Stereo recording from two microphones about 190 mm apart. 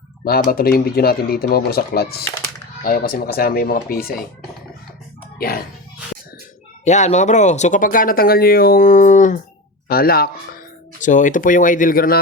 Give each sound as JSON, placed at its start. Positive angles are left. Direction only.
{"t": 0.3, "sound": "speech", "side_deg": 50}
{"t": 5.4, "sound": "speech", "side_deg": 55}
{"t": 6.8, "sound": "speech", "side_deg": 40}
{"t": 9.9, "sound": "speech", "side_deg": 55}
{"t": 11.0, "sound": "speech", "side_deg": 40}